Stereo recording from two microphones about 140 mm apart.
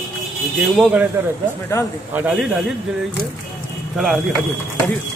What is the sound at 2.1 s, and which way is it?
Speech, 10° right (ahead or behind).